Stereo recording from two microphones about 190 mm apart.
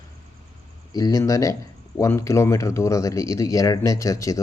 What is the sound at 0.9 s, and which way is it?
Speech, 20° left (ahead or behind).